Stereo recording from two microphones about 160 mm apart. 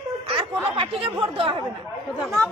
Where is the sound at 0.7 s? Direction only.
35° right (ahead or behind).